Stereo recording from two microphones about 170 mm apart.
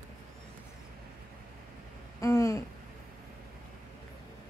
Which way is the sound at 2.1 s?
20° left (ahead or behind).